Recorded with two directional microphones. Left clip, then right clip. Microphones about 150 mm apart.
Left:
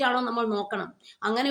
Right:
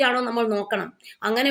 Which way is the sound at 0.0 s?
15° right (ahead or behind).